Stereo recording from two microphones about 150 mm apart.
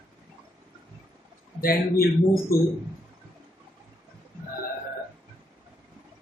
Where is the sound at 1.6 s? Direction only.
85° left.